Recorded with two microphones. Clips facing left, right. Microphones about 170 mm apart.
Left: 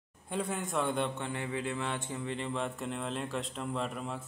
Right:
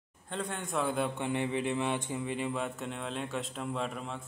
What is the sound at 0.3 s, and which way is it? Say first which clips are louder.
Speech: left 2 dB; 5° left (ahead or behind).